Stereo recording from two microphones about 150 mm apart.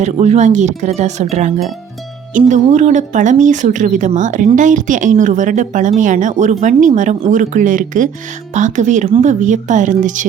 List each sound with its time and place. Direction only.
0.0 s speech: 50° right (ahead or behind)